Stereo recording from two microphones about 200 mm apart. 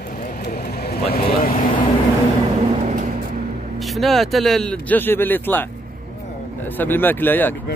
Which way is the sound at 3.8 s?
Centre (ahead or behind).